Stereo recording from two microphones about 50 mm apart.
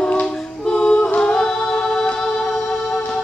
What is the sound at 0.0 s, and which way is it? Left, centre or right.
Music, centre.